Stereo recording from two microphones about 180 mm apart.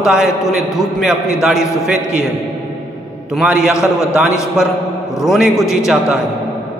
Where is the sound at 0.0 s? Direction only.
Centre (ahead or behind).